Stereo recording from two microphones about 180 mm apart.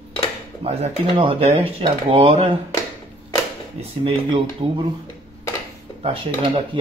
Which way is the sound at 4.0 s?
30° right (ahead or behind).